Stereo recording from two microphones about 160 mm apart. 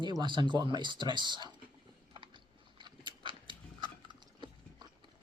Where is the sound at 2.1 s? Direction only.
30° right (ahead or behind).